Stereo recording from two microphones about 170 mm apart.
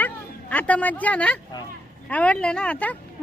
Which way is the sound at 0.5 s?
10° left (ahead or behind).